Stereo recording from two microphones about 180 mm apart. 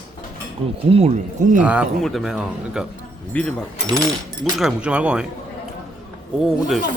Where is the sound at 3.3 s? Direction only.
10° left (ahead or behind).